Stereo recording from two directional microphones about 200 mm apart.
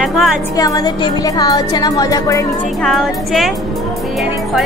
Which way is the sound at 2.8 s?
Centre (ahead or behind).